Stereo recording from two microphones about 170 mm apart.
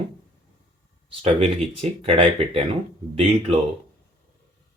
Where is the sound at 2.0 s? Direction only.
30° right (ahead or behind).